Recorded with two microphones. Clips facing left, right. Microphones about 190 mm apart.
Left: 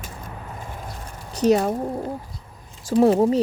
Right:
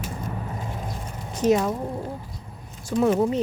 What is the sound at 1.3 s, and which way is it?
Speech, 35° left (ahead or behind).